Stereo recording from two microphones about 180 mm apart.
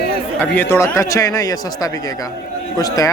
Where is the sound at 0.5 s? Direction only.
10° left (ahead or behind).